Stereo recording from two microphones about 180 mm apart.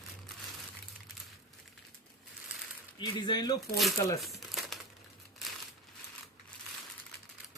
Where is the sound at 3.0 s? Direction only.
25° left (ahead or behind).